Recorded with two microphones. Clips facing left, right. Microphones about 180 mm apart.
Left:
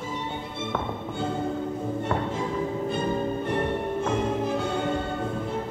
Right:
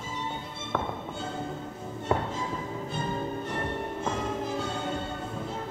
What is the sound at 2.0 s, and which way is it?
Music, 60° left (ahead or behind).